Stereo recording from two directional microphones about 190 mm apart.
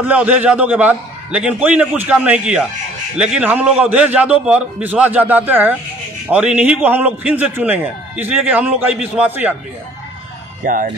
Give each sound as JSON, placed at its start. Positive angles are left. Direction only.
{"t": 0.0, "sound": "a man's voice", "side_deg": -10}
{"t": 10.6, "sound": "speech", "side_deg": -45}